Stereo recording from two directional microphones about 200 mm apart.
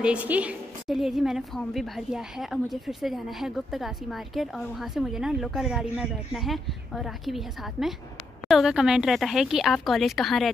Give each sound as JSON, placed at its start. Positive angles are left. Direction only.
{"t": 0.0, "sound": "a woman's voice", "side_deg": -5}